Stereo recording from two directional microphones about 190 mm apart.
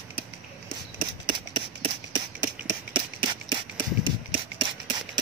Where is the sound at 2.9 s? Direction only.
25° right (ahead or behind).